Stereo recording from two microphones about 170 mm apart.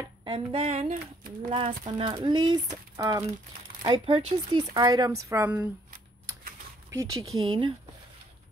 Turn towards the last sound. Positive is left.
turn(degrees=-30)  # may be behind; listen again after turning